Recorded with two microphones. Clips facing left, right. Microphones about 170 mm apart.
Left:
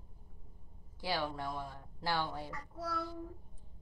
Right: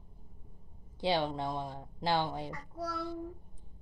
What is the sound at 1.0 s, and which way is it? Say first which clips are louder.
Speech: right 6 dB; 20° right (ahead or behind).